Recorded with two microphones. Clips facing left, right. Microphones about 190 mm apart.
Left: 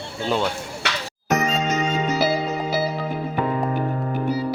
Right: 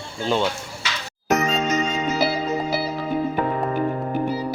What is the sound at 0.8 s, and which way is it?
Music, 65° left (ahead or behind).